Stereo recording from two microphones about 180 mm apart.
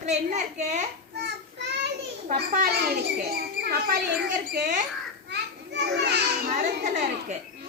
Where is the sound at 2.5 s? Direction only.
60° right (ahead or behind).